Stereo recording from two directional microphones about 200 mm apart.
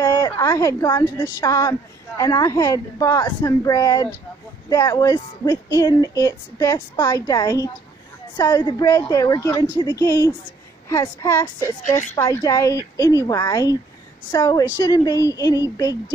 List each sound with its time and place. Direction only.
0.0 s a woman's voice: 20° left (ahead or behind)